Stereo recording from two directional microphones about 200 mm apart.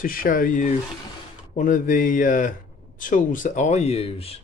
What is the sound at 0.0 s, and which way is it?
Speech, 45° left (ahead or behind).